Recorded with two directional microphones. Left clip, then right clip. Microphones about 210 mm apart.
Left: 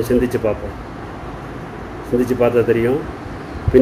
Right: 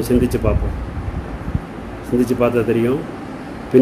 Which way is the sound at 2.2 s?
15° right (ahead or behind).